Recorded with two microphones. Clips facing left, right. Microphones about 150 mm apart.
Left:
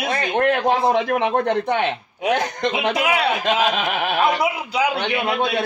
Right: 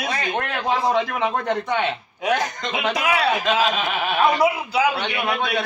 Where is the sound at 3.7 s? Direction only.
60° left (ahead or behind).